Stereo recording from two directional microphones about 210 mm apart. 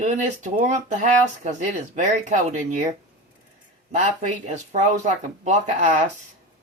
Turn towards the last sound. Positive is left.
turn(degrees=-35)  # may be behind; listen again after turning